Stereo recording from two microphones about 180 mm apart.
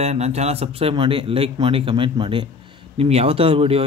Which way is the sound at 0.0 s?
35° right (ahead or behind).